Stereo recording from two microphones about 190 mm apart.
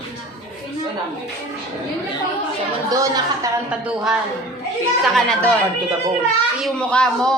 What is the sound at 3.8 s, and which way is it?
A man's voice, 5° right (ahead or behind).